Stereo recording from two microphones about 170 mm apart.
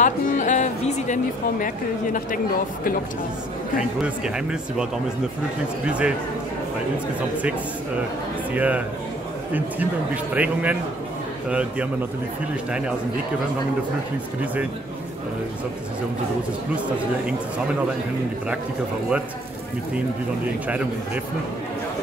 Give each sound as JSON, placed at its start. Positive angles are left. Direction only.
{"t": 0.0, "sound": "music", "side_deg": 45}
{"t": 2.1, "sound": "speech", "side_deg": 55}
{"t": 4.0, "sound": "speech", "side_deg": -5}
{"t": 5.9, "sound": "a man's voice", "side_deg": -5}
{"t": 8.5, "sound": "a man's voice", "side_deg": -10}
{"t": 10.3, "sound": "a man's voice", "side_deg": -10}
{"t": 14.4, "sound": "a man's voice", "side_deg": -10}
{"t": 20.6, "sound": "a man's voice", "side_deg": -10}